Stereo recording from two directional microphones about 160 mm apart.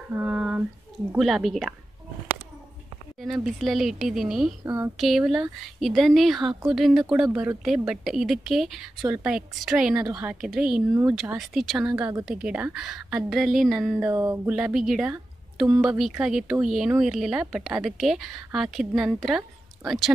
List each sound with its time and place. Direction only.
0.1 s a sound: 10° right (ahead or behind)
1.1 s speech: centre (ahead or behind)
3.4 s speech: centre (ahead or behind)
4.6 s speech: 15° right (ahead or behind)
4.9 s speech: centre (ahead or behind)
11.9 s a woman's voice: 20° right (ahead or behind)
12.3 s speech: 5° right (ahead or behind)